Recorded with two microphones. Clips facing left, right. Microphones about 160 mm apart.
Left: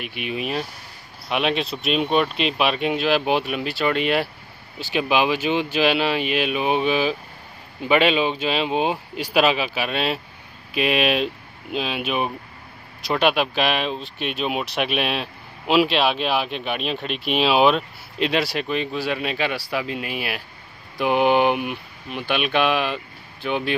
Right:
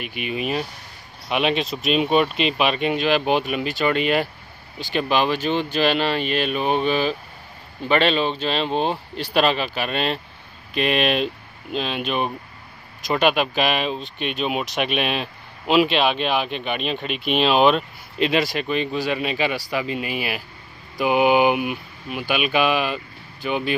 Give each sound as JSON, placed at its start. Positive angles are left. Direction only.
{"t": 0.0, "sound": "speech", "side_deg": 0}